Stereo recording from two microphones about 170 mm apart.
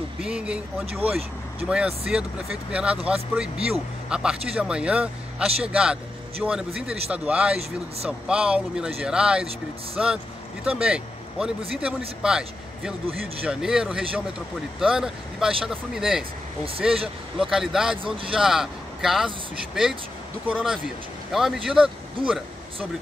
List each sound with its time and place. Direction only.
0.2 s a man's voice: 5° right (ahead or behind)
17.4 s speech: 5° right (ahead or behind)
18.0 s a man's voice: 30° right (ahead or behind)
18.3 s speech: centre (ahead or behind)